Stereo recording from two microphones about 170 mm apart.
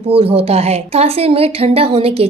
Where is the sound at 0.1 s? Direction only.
35° right (ahead or behind).